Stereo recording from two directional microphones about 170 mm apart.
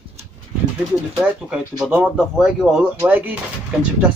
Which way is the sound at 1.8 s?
5° right (ahead or behind).